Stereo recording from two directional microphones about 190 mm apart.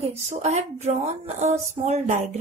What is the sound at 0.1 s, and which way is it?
A woman's voice, 35° right (ahead or behind).